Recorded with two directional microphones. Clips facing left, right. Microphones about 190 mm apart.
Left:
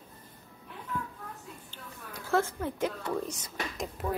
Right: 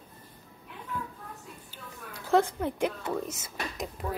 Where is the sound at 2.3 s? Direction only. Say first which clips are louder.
Right 4 dB; 15° right (ahead or behind).